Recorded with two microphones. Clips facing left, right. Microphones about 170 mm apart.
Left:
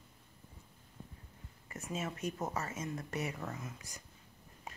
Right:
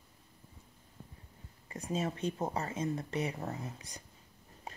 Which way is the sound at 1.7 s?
35° right (ahead or behind).